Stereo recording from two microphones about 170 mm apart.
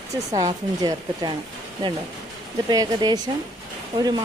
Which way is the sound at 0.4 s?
20° right (ahead or behind).